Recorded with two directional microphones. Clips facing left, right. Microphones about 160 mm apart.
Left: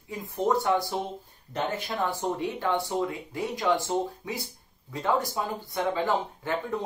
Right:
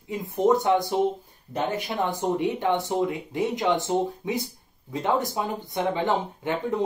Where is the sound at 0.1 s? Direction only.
20° right (ahead or behind).